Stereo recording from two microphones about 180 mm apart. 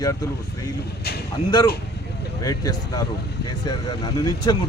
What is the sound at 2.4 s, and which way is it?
Speech, 20° left (ahead or behind).